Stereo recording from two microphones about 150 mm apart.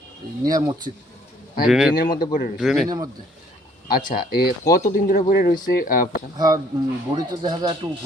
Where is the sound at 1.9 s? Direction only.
80° left.